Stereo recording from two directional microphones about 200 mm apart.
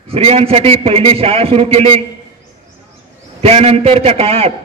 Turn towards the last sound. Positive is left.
turn(degrees=-30)  # may be behind; listen again after turning